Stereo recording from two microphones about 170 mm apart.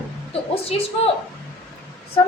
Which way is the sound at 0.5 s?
35° left (ahead or behind).